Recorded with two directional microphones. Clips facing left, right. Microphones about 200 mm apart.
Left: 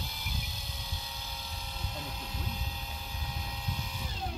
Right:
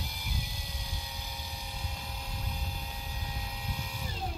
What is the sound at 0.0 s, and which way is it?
Vehicle, 15° right (ahead or behind).